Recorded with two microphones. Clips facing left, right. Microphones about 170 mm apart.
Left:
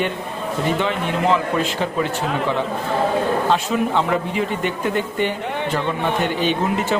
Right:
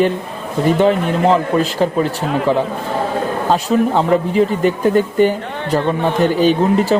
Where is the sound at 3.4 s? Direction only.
40° right (ahead or behind).